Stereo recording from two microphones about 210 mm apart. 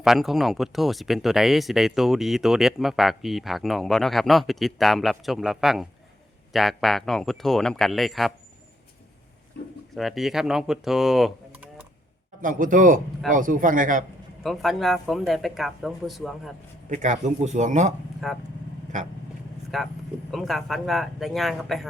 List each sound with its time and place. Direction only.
0.0 s speech: centre (ahead or behind)
9.9 s speech: centre (ahead or behind)
12.4 s speech: 40° right (ahead or behind)
14.4 s speech: centre (ahead or behind)
16.9 s speech: 35° right (ahead or behind)
18.2 s speech: centre (ahead or behind)
18.9 s speech: 35° right (ahead or behind)
19.7 s speech: centre (ahead or behind)